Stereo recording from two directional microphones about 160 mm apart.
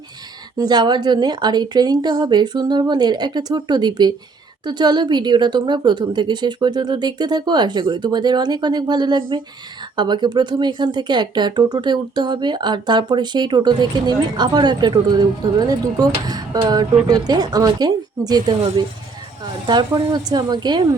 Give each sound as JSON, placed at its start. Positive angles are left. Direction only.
{"t": 0.6, "sound": "speech", "side_deg": -25}
{"t": 19.6, "sound": "speech", "side_deg": -25}